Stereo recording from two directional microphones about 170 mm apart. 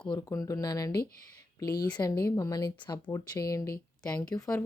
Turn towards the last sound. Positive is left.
turn(degrees=20)  # may be behind; listen again after turning